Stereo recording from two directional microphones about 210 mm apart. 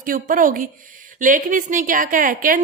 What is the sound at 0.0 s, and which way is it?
A woman's voice, 40° right (ahead or behind).